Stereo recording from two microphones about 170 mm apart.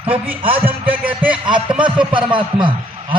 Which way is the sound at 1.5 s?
30° right (ahead or behind).